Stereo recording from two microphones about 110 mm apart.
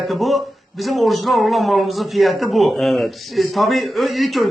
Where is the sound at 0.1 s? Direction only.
Centre (ahead or behind).